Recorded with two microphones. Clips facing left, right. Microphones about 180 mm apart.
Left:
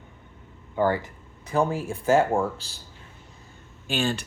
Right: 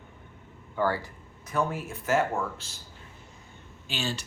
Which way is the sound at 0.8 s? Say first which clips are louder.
Left 4 dB; 20° left (ahead or behind).